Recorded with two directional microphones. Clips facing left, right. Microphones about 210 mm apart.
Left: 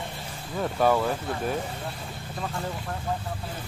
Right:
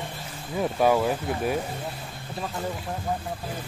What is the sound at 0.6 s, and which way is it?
Speech, 10° right (ahead or behind).